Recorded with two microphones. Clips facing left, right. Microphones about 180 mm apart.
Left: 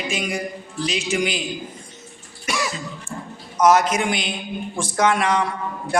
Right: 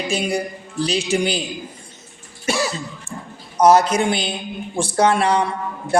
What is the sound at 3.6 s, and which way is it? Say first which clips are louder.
Mantra: right 3 dB; 30° right (ahead or behind).